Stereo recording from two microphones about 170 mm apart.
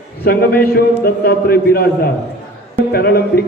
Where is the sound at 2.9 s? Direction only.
65° left (ahead or behind).